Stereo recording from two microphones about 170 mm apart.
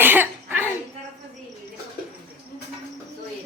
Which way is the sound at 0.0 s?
10° right (ahead or behind).